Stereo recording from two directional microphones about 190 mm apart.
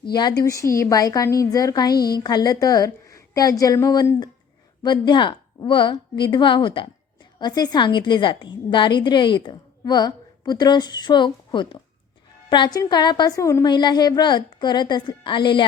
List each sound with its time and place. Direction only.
0.0 s a woman's voice: 20° left (ahead or behind)